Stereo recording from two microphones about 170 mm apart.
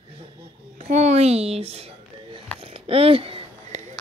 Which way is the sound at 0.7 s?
40° right (ahead or behind).